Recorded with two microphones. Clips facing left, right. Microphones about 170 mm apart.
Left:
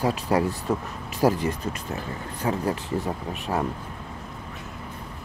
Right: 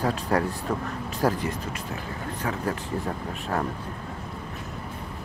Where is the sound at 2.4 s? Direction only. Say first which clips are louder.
Left 4 dB; 15° left (ahead or behind).